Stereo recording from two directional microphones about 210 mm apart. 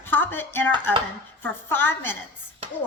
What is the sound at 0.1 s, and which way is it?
A woman's voice, 10° left (ahead or behind).